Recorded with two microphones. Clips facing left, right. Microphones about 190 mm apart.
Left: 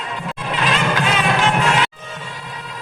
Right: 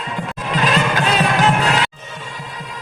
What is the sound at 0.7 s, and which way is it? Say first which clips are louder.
Music: right 1 dB; 40° right (ahead or behind).